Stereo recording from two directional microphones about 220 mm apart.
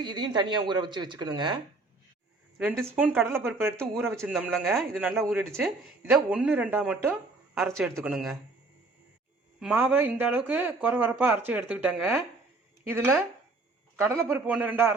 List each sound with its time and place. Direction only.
0.0 s speech: 20° right (ahead or behind)
2.6 s speech: 10° right (ahead or behind)
4.4 s speech: centre (ahead or behind)
9.6 s speech: 5° right (ahead or behind)